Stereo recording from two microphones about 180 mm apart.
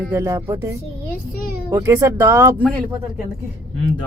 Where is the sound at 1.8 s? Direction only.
15° right (ahead or behind).